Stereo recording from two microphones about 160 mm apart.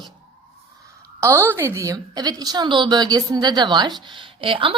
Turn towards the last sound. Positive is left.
turn(degrees=-35)  # may be behind; listen again after turning